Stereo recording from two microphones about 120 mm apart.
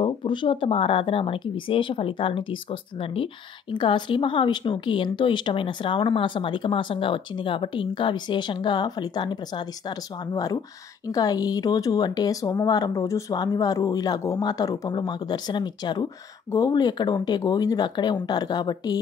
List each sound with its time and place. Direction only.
0.0 s a woman's voice: 40° left (ahead or behind)